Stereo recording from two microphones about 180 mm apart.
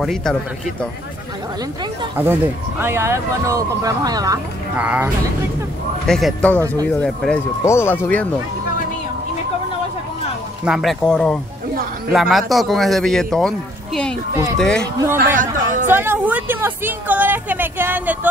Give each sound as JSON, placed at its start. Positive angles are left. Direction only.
{"t": 0.0, "sound": "speech", "side_deg": 5}
{"t": 2.1, "sound": "a woman's voice", "side_deg": -10}
{"t": 4.7, "sound": "a woman's voice", "side_deg": -10}
{"t": 10.6, "sound": "speech", "side_deg": 0}
{"t": 15.1, "sound": "a man's voice", "side_deg": -45}
{"t": 15.9, "sound": "a woman's voice", "side_deg": -10}